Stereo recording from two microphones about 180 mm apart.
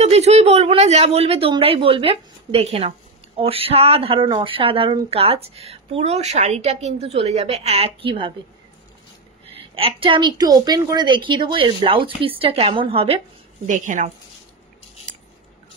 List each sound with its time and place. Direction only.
0.0 s speech: 35° right (ahead or behind)
9.8 s speech: 30° right (ahead or behind)
13.7 s a woman's voice: 45° right (ahead or behind)